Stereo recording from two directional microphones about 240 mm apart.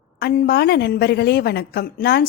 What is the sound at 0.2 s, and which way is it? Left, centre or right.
A woman's voice, left.